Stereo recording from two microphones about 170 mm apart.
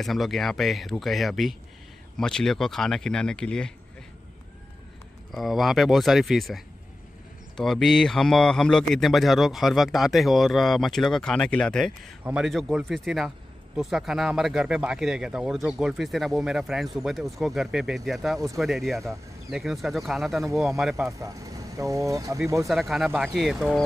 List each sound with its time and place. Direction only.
0.0 s speech: centre (ahead or behind)
5.3 s speech: centre (ahead or behind)
21.2 s speech: 20° right (ahead or behind)
22.7 s speech: centre (ahead or behind)